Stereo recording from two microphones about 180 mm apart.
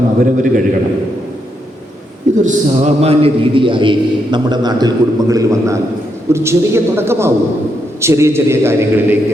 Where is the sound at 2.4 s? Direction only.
35° right (ahead or behind); by 9.2 s 10° right (ahead or behind).